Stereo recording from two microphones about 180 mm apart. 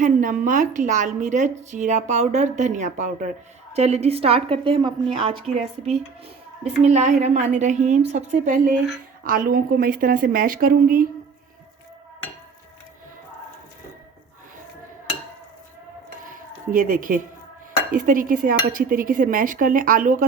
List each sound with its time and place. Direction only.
0.0 s a woman's voice: 45° right (ahead or behind)
16.2 s a sound: 50° right (ahead or behind)
17.9 s a woman's voice: 45° right (ahead or behind)